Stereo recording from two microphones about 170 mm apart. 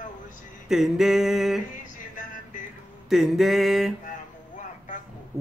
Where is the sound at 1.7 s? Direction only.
50° left (ahead or behind).